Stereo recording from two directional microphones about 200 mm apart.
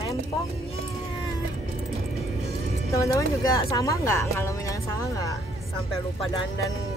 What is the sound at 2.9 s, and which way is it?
Speech, 15° left (ahead or behind).